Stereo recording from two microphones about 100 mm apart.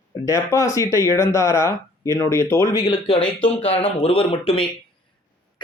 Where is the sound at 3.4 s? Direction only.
80° left.